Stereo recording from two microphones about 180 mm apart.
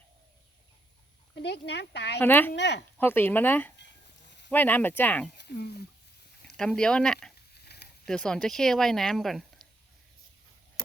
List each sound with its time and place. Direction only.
1.4 s speech: 70° left (ahead or behind)
2.1 s speech: 10° left (ahead or behind)
2.5 s speech: 70° left (ahead or behind)
3.0 s speech: 10° left (ahead or behind)
5.4 s speech: 65° left (ahead or behind)
6.4 s speech: 5° left (ahead or behind)
7.6 s a sound: 65° left (ahead or behind)
8.0 s speech: 5° left (ahead or behind)